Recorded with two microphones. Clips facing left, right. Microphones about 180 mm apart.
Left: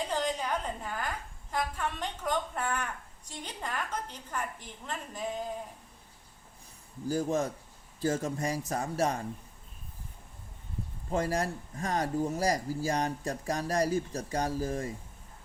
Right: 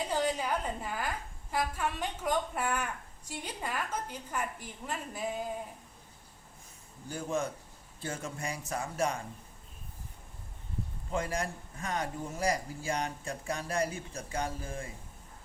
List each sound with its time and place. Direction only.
0.1 s a woman's voice: 5° right (ahead or behind)
7.1 s speech: 40° left (ahead or behind)
11.1 s speech: 40° left (ahead or behind)